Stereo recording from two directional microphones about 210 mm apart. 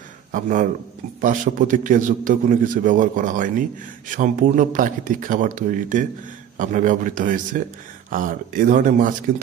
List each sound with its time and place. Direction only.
0.3 s a man's voice: 40° right (ahead or behind)